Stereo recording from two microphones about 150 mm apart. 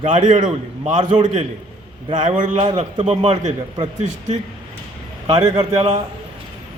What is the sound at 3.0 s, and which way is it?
Speech, 45° right (ahead or behind).